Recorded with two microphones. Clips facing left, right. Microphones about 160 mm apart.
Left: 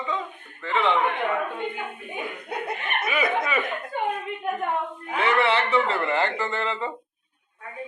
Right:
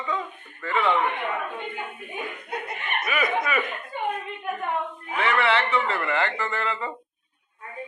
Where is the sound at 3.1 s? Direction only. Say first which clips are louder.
Left 1 dB; 25° left (ahead or behind).